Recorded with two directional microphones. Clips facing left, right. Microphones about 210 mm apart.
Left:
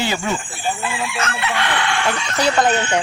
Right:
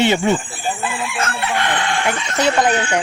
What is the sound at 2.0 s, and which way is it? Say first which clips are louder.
Speech: right 2 dB; 20° right (ahead or behind).